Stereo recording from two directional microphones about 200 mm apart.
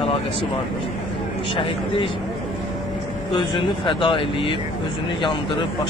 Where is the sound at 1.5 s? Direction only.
25° left (ahead or behind).